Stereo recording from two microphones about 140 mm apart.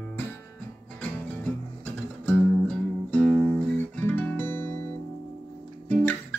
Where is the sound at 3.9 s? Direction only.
15° left (ahead or behind).